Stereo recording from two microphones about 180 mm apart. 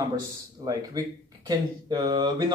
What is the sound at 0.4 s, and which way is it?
Speech, 20° right (ahead or behind).